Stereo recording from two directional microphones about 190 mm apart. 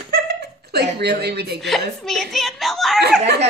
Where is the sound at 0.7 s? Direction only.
60° right (ahead or behind).